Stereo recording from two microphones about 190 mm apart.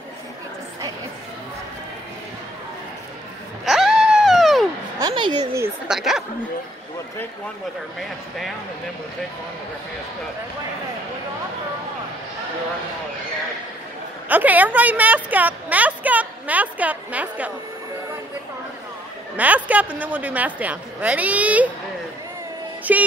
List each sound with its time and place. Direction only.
3.6 s a sound: centre (ahead or behind)
4.9 s a sound: 20° right (ahead or behind)
5.9 s speech: centre (ahead or behind)
14.3 s a woman's voice: 10° right (ahead or behind)
19.3 s a woman's voice: 10° right (ahead or behind)
22.9 s a woman's voice: 10° right (ahead or behind)